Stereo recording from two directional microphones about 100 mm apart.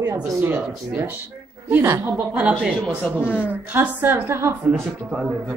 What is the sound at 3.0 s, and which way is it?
Speech, 20° left (ahead or behind).